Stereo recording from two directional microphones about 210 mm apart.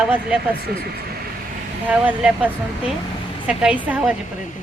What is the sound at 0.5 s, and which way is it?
Speech, 50° right (ahead or behind).